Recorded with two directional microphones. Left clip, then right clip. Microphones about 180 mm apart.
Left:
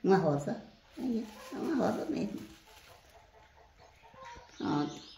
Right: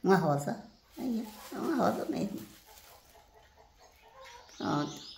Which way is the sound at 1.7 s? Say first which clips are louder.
Right 2 dB; 55° right (ahead or behind).